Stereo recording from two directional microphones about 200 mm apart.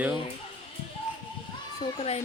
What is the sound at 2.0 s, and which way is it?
Speech, 30° left (ahead or behind).